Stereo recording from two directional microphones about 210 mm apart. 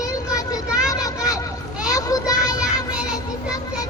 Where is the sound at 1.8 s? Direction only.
15° left (ahead or behind).